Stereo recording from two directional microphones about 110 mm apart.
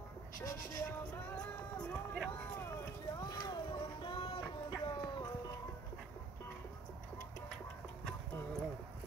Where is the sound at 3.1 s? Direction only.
35° left (ahead or behind); by 4.4 s 55° left (ahead or behind).